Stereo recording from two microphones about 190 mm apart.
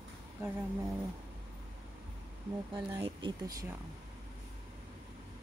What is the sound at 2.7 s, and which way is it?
Speech, 20° right (ahead or behind).